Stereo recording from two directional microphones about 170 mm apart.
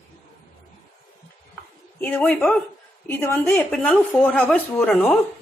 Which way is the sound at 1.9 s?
10° left (ahead or behind).